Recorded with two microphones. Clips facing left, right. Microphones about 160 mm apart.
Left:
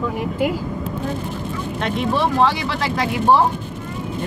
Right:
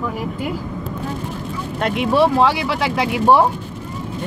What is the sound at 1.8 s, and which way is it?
Speech, 5° right (ahead or behind).